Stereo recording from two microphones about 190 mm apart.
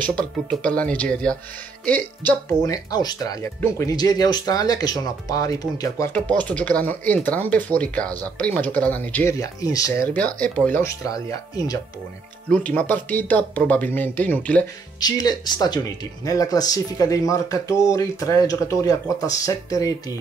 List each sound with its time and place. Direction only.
0.0 s speech: 5° left (ahead or behind)
2.6 s speech: 20° left (ahead or behind)
12.4 s speech: 10° left (ahead or behind)
15.0 s speech: 20° left (ahead or behind)